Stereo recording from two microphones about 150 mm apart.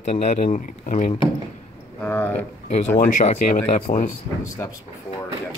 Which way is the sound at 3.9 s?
60° left (ahead or behind).